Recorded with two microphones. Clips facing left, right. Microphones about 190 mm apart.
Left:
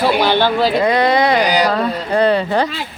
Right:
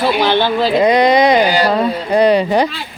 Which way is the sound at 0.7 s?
20° right (ahead or behind).